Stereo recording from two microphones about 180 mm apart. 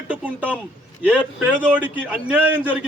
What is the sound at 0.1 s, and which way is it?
A man's voice, 5° right (ahead or behind).